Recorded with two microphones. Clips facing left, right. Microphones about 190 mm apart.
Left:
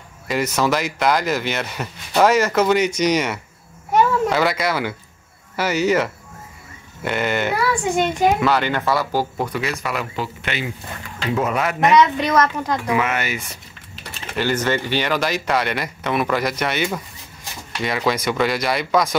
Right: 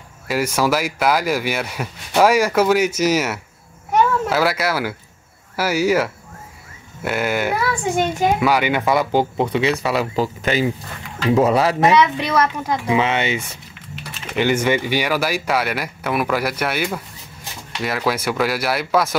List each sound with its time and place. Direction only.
0.3 s speech: 10° right (ahead or behind); by 11.9 s 30° right (ahead or behind)
12.0 s speech: 10° right (ahead or behind)
12.8 s speech: 25° right (ahead or behind)
14.3 s speech: 10° right (ahead or behind)